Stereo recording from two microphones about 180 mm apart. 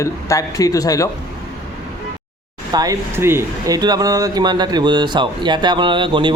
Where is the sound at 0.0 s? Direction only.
15° left (ahead or behind).